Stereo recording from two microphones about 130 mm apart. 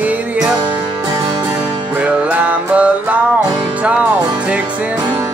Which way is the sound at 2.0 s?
10° right (ahead or behind).